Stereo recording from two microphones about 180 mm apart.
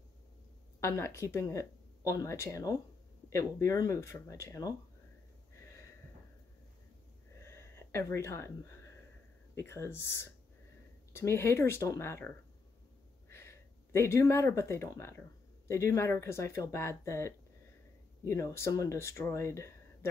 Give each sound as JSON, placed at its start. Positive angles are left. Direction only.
{"t": 0.7, "sound": "speech", "side_deg": 15}
{"t": 7.4, "sound": "a sound", "side_deg": 15}
{"t": 9.6, "sound": "speech", "side_deg": 15}
{"t": 13.3, "sound": "speech", "side_deg": 15}